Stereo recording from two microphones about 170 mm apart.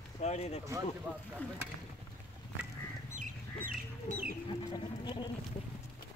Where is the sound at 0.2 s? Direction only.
40° left (ahead or behind).